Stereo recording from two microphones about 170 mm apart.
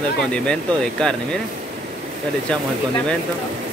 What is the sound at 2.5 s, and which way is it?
Speech, 5° left (ahead or behind).